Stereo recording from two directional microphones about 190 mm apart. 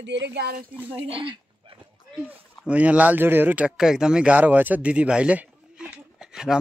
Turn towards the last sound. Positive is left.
turn(degrees=-5)  # may be behind; listen again after turning